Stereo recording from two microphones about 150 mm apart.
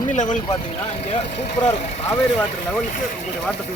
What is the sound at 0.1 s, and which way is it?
Speech, 55° left (ahead or behind).